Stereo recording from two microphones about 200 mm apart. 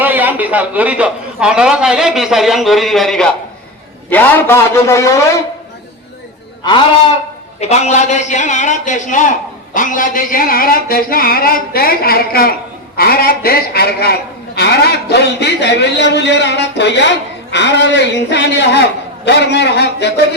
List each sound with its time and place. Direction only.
0.0 s a man's voice: 10° right (ahead or behind); by 5.2 s 15° left (ahead or behind)
7.6 s a man's voice: 35° left (ahead or behind); by 20.1 s 55° left (ahead or behind)